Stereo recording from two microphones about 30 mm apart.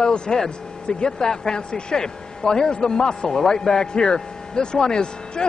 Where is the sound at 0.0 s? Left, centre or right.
Left.